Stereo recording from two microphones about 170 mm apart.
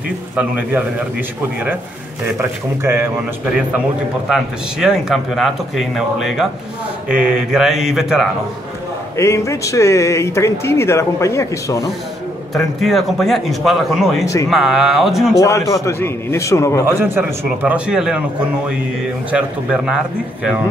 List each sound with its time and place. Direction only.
0.4 s speech: 10° right (ahead or behind)
2.3 s speech: 15° right (ahead or behind)
4.3 s a man's voice: 5° right (ahead or behind)
9.1 s speech: 15° left (ahead or behind)
12.5 s a man's voice: centre (ahead or behind)
14.2 s speech: 20° left (ahead or behind)
14.5 s a man's voice: centre (ahead or behind)
15.3 s speech: 20° left (ahead or behind)
16.8 s a man's voice: 15° right (ahead or behind)
19.3 s a man's voice: 5° right (ahead or behind)